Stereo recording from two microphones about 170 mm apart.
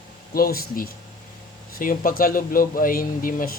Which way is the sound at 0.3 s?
60° left (ahead or behind).